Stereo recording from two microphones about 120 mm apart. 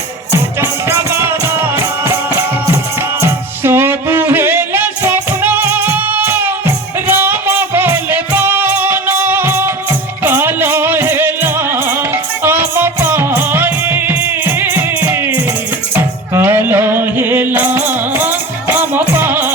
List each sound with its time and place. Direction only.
0.9 s music: 20° right (ahead or behind)
3.2 s music: 20° right (ahead or behind)